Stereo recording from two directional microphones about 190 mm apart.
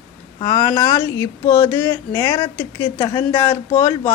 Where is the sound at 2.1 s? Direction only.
25° left (ahead or behind).